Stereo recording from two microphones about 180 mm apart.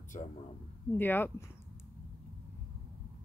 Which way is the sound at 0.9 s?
10° left (ahead or behind).